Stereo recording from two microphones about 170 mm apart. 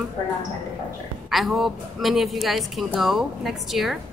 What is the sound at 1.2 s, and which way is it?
Speech, centre (ahead or behind).